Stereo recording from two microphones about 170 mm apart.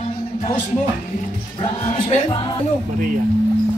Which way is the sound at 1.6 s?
40° left (ahead or behind).